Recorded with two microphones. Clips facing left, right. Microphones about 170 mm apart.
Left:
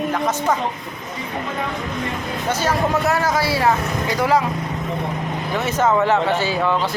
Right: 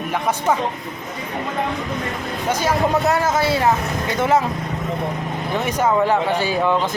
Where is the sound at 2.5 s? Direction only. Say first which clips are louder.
Right 1 dB; 15° right (ahead or behind).